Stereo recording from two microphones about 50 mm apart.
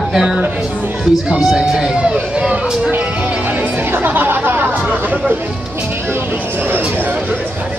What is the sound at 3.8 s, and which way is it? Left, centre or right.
Chatter, right.